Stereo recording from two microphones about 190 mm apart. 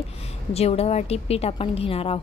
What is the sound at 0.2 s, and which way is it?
A woman's voice, 35° left (ahead or behind).